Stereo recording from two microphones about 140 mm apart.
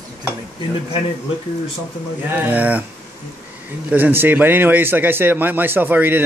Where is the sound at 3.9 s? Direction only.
15° right (ahead or behind).